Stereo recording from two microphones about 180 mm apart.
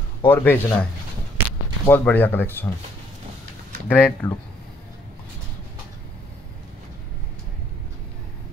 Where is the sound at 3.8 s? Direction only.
10° left (ahead or behind).